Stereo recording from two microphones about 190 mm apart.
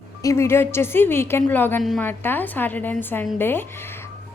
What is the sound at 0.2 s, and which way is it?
A woman's voice, 15° left (ahead or behind).